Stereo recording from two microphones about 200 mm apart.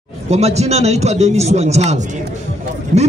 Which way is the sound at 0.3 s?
35° right (ahead or behind).